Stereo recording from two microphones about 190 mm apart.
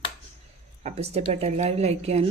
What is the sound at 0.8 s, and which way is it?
A woman's voice, 35° right (ahead or behind).